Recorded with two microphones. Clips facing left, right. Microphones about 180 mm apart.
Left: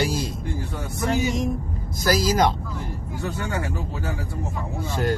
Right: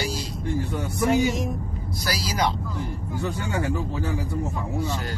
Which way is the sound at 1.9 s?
45° left (ahead or behind).